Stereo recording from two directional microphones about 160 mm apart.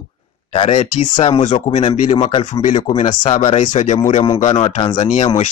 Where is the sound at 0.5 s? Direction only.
35° left (ahead or behind).